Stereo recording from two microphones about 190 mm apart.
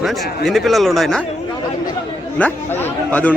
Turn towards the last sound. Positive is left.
turn(degrees=10)  # may be behind; listen again after turning